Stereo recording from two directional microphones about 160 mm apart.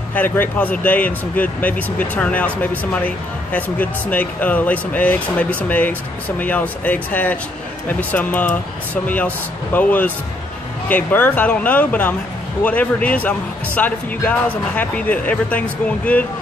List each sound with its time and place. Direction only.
0.1 s speech: 10° left (ahead or behind)